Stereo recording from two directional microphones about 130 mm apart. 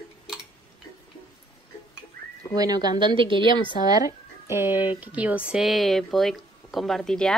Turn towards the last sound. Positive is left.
turn(degrees=5)  # may be behind; listen again after turning